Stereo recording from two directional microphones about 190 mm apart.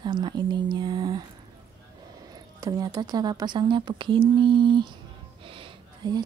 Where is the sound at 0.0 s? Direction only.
25° right (ahead or behind).